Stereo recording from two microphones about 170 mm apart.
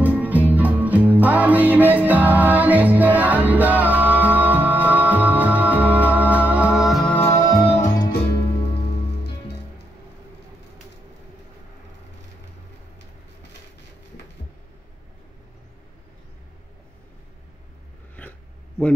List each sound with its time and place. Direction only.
0.0 s music: 10° right (ahead or behind)
7.2 s music: 20° left (ahead or behind)
7.6 s music: 40° left (ahead or behind)